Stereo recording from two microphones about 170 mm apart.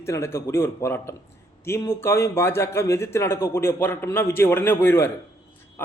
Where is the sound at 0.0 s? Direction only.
15° left (ahead or behind).